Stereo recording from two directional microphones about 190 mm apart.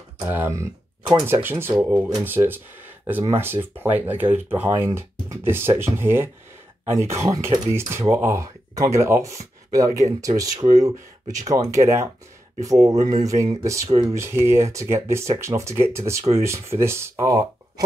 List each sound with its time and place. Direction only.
0.3 s speech: 15° right (ahead or behind)